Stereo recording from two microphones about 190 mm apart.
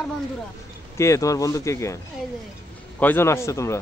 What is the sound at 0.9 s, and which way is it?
A man's voice, 15° left (ahead or behind).